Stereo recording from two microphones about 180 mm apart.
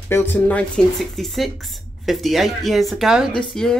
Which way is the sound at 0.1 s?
10° left (ahead or behind).